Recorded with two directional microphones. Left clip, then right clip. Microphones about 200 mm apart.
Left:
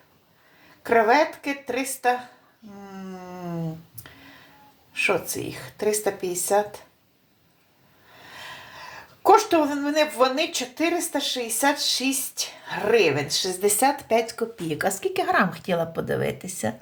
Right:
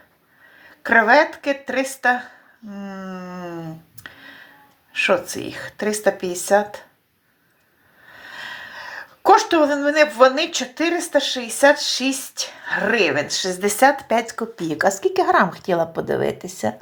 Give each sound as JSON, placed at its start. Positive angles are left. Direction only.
{"t": 0.9, "sound": "speech", "side_deg": -15}
{"t": 4.9, "sound": "speech", "side_deg": -15}
{"t": 8.3, "sound": "speech", "side_deg": -15}